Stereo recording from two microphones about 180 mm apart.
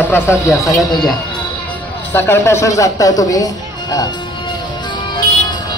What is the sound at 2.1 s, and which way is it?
Speech, 15° left (ahead or behind).